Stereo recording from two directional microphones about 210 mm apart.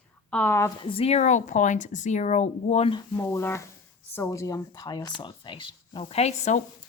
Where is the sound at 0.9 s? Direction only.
30° left (ahead or behind).